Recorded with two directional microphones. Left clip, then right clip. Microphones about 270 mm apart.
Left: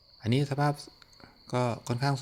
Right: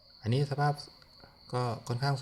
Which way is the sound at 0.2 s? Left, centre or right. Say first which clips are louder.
Left 2 dB; left.